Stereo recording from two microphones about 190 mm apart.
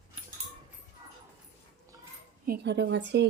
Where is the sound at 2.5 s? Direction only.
65° right (ahead or behind).